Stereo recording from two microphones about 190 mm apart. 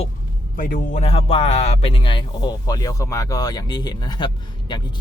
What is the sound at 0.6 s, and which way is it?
Speech, 50° left (ahead or behind).